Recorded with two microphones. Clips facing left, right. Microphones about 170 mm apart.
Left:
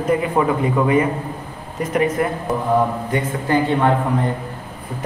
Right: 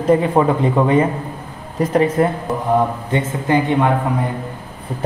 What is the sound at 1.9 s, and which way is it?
Speech, 30° right (ahead or behind).